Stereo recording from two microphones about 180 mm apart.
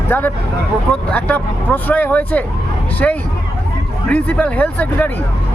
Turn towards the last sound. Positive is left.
turn(degrees=10)  # may be behind; listen again after turning